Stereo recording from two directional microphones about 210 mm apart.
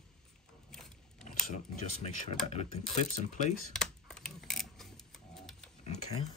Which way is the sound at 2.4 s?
30° left (ahead or behind).